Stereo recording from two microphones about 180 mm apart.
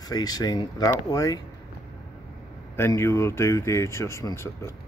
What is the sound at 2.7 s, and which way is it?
Speech, 15° left (ahead or behind).